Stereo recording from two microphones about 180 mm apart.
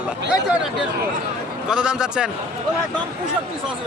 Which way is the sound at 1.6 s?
5° right (ahead or behind).